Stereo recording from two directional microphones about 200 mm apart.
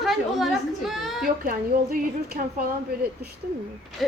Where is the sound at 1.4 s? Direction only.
45° right (ahead or behind).